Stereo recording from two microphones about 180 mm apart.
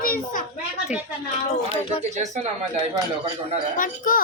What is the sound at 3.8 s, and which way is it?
Speech, 50° left (ahead or behind).